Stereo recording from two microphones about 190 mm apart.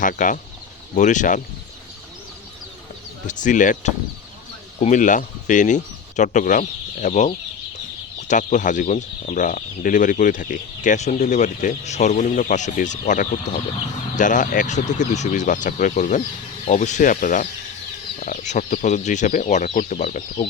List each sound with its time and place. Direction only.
0.0 s speech: 45° left (ahead or behind)
3.2 s speech: 40° left (ahead or behind)
8.3 s speech: 40° left (ahead or behind)